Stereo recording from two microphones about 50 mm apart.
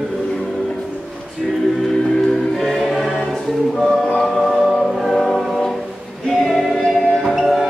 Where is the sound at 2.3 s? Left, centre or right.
Centre.